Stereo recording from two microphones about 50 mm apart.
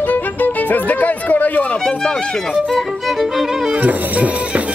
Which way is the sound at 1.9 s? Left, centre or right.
Left.